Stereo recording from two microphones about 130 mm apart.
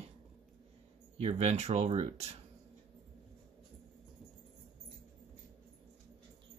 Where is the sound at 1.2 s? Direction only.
55° right (ahead or behind).